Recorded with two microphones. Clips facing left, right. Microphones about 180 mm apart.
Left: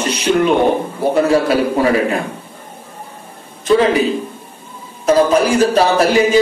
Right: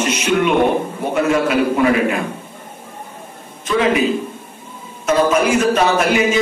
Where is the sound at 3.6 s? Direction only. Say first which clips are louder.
Left 4 dB; 35° left (ahead or behind).